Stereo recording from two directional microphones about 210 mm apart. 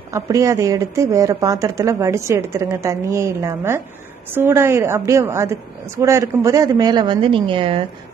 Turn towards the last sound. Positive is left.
turn(degrees=-25)  # may be behind; listen again after turning